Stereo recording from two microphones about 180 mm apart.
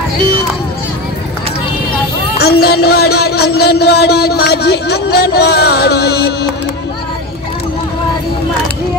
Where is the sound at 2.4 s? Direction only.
60° left (ahead or behind).